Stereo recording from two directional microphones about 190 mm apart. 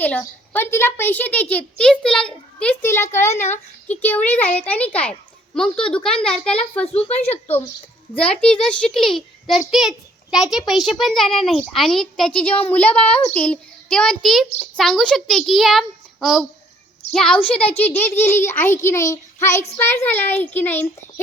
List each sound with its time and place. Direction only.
0.0 s a child's voice: 10° left (ahead or behind)
6.8 s speech: 30° left (ahead or behind)
8.1 s a woman's voice: 5° left (ahead or behind)